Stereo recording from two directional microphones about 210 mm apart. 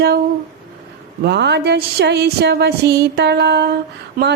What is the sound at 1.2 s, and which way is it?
Mantra, 55° right (ahead or behind).